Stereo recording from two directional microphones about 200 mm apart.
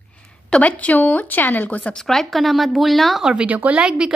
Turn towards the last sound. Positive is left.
turn(degrees=-5)  # may be behind; listen again after turning